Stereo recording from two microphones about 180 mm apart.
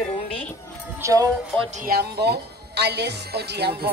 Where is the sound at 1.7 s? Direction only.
50° right (ahead or behind).